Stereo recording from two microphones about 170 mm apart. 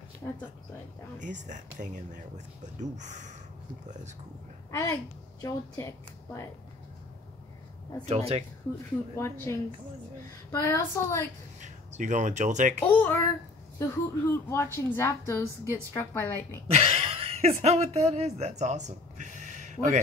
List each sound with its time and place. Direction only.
0.2 s a woman's voice: 10° left (ahead or behind)
1.2 s speech: 45° right (ahead or behind)
4.6 s a woman's voice: 20° left (ahead or behind)
8.0 s speech: 40° right (ahead or behind)
9.1 s a woman's voice: 15° left (ahead or behind)
11.6 s speech: 45° right (ahead or behind)
12.8 s a woman's voice: 10° left (ahead or behind)
16.6 s speech: 35° right (ahead or behind)